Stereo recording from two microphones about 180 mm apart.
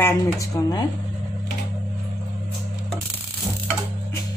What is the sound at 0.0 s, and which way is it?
Speech, 15° left (ahead or behind).